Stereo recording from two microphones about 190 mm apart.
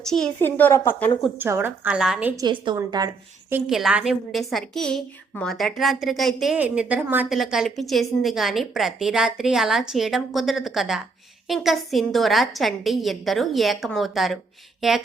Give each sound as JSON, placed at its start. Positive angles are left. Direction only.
{"t": 0.0, "sound": "a woman's voice", "side_deg": 5}
{"t": 1.4, "sound": "a woman's voice", "side_deg": -10}
{"t": 2.3, "sound": "a woman's voice", "side_deg": -20}
{"t": 3.5, "sound": "a woman's voice", "side_deg": -5}
{"t": 14.8, "sound": "a sound", "side_deg": 0}